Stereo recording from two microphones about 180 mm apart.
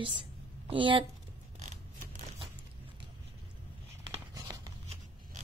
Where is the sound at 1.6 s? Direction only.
40° right (ahead or behind).